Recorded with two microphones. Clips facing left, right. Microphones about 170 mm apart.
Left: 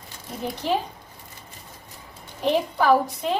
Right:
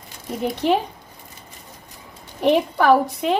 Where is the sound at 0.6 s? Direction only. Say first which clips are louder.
Right 5 dB; 65° right (ahead or behind).